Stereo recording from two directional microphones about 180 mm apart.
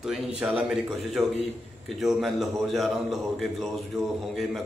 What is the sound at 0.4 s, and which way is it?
A man's voice, 10° right (ahead or behind).